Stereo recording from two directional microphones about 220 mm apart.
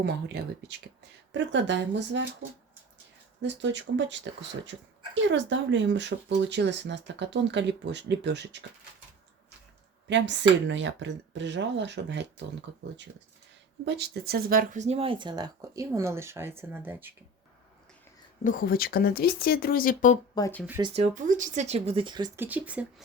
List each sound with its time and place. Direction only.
1.3 s speech: 55° right (ahead or behind)
3.4 s speech: 55° right (ahead or behind)
10.1 s speech: 55° right (ahead or behind)
13.8 s speech: 50° right (ahead or behind); by 17.2 s 10° right (ahead or behind)
18.4 s speech: 40° left (ahead or behind)
20.3 s speech: 15° left (ahead or behind)
20.8 s speech: 30° right (ahead or behind)
22.4 s speech: 5° right (ahead or behind)